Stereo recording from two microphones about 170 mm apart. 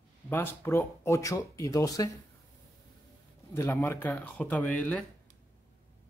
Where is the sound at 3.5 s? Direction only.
15° left (ahead or behind).